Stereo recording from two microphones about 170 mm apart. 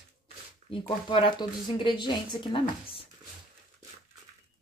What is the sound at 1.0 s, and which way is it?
A woman's voice, 30° left (ahead or behind).